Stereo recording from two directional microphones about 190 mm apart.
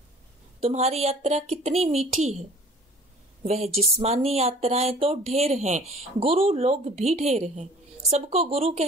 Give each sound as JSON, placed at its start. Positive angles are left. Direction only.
{"t": 0.6, "sound": "speech", "side_deg": -35}
{"t": 3.4, "sound": "speech", "side_deg": -35}